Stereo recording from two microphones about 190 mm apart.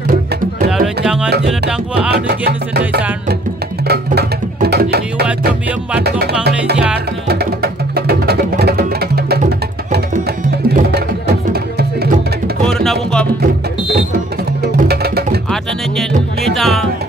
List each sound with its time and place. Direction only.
1.0 s music: 5° right (ahead or behind)
2.2 s music: 55° right (ahead or behind)
3.8 s music: 55° right (ahead or behind)
12.6 s music: centre (ahead or behind)
14.6 s music: 55° right (ahead or behind)
15.5 s music: centre (ahead or behind)